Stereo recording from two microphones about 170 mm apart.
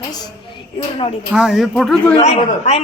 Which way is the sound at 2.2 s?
40° left (ahead or behind).